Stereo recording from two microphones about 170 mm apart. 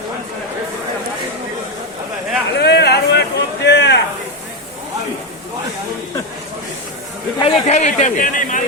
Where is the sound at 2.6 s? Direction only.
80° left.